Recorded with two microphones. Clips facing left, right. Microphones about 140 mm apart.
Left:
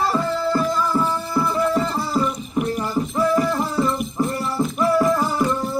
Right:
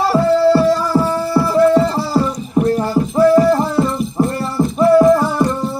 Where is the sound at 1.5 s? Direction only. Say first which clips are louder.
Right 11 dB; 30° right (ahead or behind).